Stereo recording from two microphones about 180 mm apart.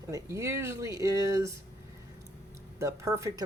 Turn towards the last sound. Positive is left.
turn(degrees=-15)  # may be behind; listen again after turning